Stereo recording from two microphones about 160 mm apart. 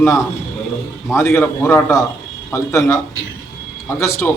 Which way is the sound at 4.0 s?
15° left (ahead or behind).